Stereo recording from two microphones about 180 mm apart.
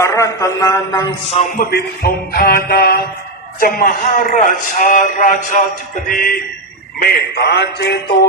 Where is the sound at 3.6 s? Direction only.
50° left (ahead or behind).